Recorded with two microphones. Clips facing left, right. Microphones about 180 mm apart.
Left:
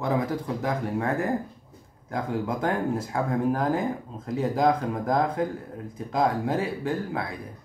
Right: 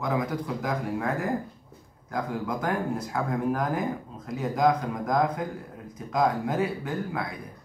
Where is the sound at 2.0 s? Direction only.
25° left (ahead or behind).